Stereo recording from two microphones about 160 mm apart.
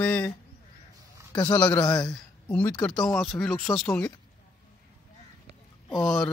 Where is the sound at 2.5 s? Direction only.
10° left (ahead or behind).